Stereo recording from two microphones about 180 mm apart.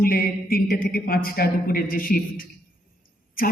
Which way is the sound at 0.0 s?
55° left (ahead or behind).